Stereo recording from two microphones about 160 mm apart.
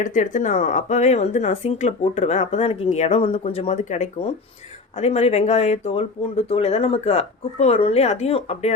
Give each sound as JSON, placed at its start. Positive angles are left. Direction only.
{"t": 0.0, "sound": "speech", "side_deg": 55}